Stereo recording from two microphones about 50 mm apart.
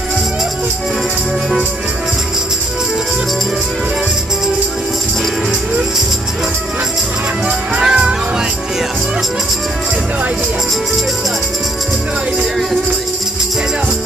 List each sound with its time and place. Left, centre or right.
7.4 s music: centre